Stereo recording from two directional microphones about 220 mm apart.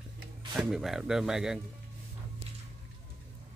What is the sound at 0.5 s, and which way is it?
Speech, centre (ahead or behind).